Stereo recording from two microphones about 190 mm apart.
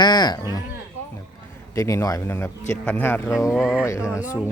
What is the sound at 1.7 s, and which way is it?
Speech, 15° left (ahead or behind).